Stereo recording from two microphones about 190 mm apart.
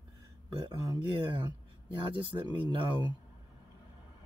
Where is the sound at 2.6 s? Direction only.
25° right (ahead or behind).